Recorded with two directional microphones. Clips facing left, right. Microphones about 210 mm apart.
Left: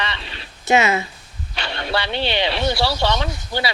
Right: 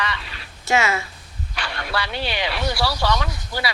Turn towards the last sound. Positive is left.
turn(degrees=25)  # may be behind; listen again after turning